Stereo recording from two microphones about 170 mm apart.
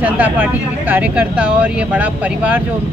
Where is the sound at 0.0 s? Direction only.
10° right (ahead or behind).